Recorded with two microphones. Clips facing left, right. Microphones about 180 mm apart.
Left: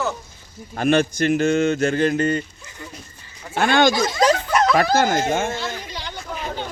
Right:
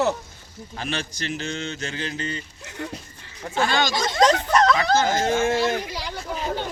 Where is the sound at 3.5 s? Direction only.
55° left (ahead or behind).